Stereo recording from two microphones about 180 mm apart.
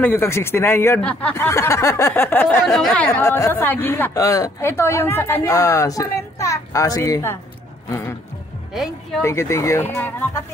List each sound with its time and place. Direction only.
0.0 s speech: 10° left (ahead or behind)
3.1 s speech: 15° left (ahead or behind)
8.7 s speech: centre (ahead or behind)
9.2 s speech: 15° left (ahead or behind)